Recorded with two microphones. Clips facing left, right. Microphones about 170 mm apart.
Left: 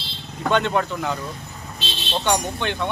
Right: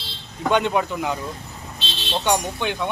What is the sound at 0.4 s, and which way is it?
Speech, 10° right (ahead or behind).